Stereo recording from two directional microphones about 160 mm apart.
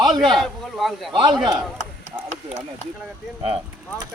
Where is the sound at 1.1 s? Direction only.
30° right (ahead or behind).